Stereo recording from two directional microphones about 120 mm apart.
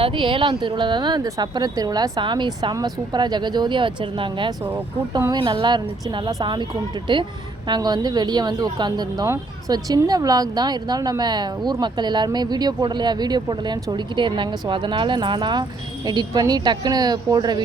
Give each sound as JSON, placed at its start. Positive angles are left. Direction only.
{"t": 0.0, "sound": "speech", "side_deg": -45}